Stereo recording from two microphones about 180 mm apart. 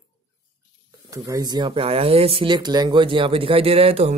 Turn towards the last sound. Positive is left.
turn(degrees=-35)  # may be behind; listen again after turning